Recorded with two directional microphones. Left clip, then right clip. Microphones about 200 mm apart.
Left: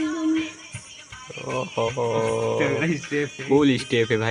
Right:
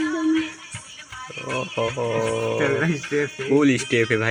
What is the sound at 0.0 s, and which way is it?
Music, 45° right (ahead or behind).